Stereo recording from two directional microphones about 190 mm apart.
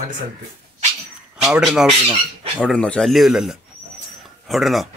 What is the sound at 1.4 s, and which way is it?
Speech, 5° right (ahead or behind).